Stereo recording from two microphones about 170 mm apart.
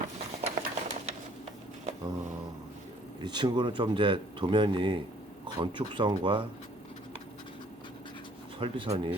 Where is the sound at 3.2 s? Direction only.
25° right (ahead or behind).